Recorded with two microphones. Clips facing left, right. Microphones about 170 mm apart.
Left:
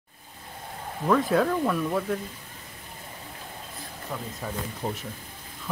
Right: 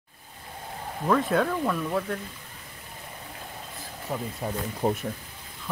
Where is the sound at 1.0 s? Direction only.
Centre (ahead or behind).